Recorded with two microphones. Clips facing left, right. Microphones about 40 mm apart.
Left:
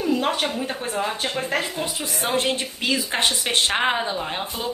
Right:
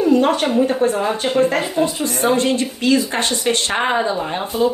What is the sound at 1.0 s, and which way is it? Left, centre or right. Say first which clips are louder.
A woman's voice: right 9 dB; centre.